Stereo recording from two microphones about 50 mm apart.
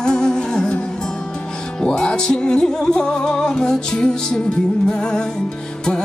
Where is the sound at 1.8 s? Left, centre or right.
Centre.